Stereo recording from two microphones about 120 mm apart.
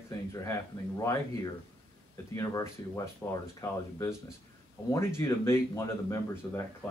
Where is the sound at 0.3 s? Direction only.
25° left (ahead or behind).